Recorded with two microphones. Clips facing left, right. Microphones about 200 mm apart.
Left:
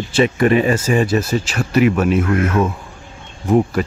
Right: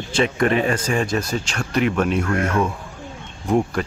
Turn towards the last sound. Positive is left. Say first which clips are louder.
# left 4 dB
turn(degrees=5)  # may be behind; listen again after turning